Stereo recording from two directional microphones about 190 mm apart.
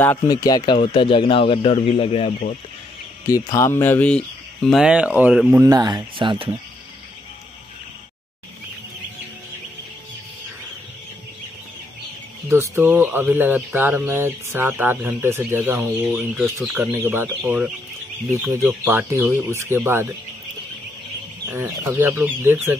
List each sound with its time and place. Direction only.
0.0 s speech: 15° left (ahead or behind); by 2.5 s 35° left (ahead or behind)
3.3 s speech: 15° left (ahead or behind); by 5.6 s 5° right (ahead or behind)
5.6 s speech: 20° right (ahead or behind)
12.4 s speech: 15° right (ahead or behind)
21.5 s speech: 10° right (ahead or behind)